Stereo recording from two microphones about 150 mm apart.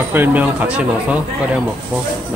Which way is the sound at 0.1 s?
10° right (ahead or behind).